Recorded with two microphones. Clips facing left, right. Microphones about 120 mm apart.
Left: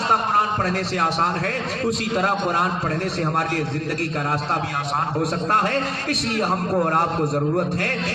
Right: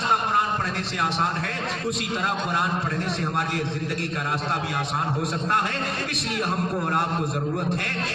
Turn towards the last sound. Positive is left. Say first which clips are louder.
# left 5 dB
turn(degrees=40)  # may be behind; listen again after turning